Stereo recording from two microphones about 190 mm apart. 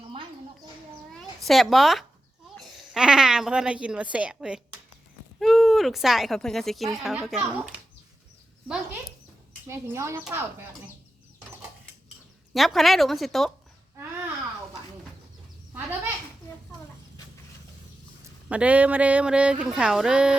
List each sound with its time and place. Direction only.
1.2 s a woman's voice: centre (ahead or behind)
8.6 s dog: 5° right (ahead or behind)
9.6 s speech: 15° right (ahead or behind)
12.5 s speech: centre (ahead or behind)
18.4 s speech: 5° right (ahead or behind)